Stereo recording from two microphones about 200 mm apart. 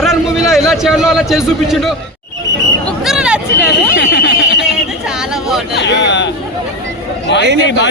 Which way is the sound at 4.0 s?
65° left (ahead or behind).